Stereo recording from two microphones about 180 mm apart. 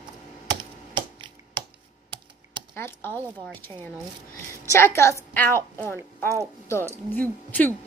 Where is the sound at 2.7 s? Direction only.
10° left (ahead or behind).